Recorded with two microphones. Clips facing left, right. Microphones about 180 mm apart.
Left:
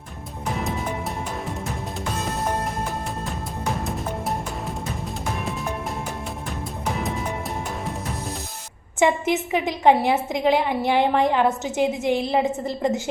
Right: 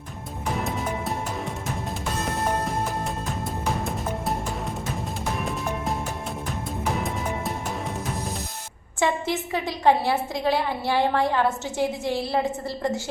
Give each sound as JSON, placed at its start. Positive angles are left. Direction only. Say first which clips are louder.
{"t": 6.8, "sound": "music", "louder": "left 1 dB", "side_deg": 0}
{"t": 9.0, "sound": "a woman's voice", "louder": "left 4 dB", "side_deg": 20}